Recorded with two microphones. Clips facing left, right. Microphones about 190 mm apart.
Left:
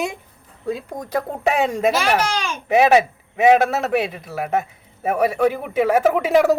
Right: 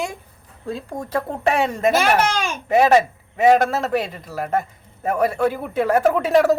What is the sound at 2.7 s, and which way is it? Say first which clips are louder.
A man's voice: even; 10° left (ahead or behind).